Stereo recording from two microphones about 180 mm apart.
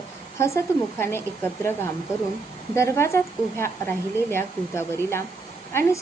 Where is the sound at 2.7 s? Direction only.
15° left (ahead or behind).